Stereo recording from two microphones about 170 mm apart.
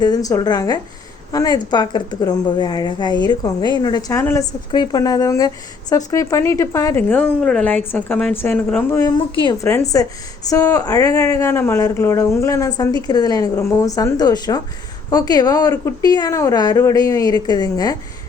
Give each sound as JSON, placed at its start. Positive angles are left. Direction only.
{"t": 0.0, "sound": "speech", "side_deg": 20}
{"t": 4.2, "sound": "a woman's voice", "side_deg": 15}
{"t": 4.7, "sound": "a woman's voice", "side_deg": 25}
{"t": 9.3, "sound": "speech", "side_deg": 30}
{"t": 9.6, "sound": "speech", "side_deg": 20}